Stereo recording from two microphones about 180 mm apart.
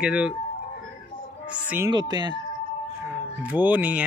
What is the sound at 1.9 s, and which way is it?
Speech, 25° right (ahead or behind).